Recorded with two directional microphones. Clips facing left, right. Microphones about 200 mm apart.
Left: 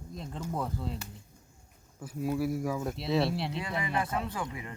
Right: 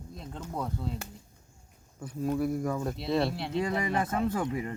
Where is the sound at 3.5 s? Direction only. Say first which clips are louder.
Right 4 dB; 40° right (ahead or behind).